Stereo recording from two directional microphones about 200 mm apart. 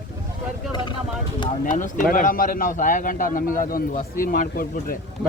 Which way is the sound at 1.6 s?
40° left (ahead or behind).